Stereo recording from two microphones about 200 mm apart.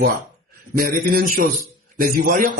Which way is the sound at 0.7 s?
45° right (ahead or behind).